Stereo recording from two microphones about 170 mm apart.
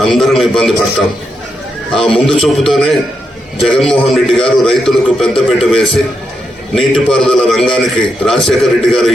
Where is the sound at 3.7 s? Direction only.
5° left (ahead or behind).